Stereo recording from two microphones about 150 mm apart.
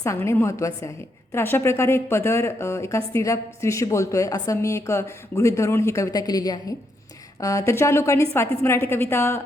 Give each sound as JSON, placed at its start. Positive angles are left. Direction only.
{"t": 0.0, "sound": "a woman's voice", "side_deg": 20}